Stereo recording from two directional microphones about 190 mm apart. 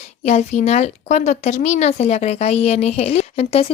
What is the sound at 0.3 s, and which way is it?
A woman's voice, 35° left (ahead or behind).